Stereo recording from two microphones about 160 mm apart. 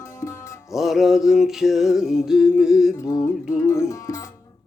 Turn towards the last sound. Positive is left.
turn(degrees=20)  # may be behind; listen again after turning